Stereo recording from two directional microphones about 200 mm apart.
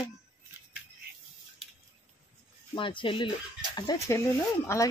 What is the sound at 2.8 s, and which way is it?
Speech, 25° left (ahead or behind).